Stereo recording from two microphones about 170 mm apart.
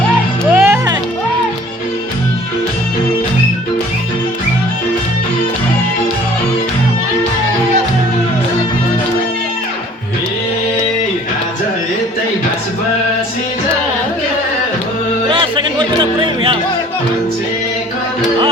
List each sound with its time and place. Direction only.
0.5 s music: 15° right (ahead or behind)
15.3 s music: 30° right (ahead or behind)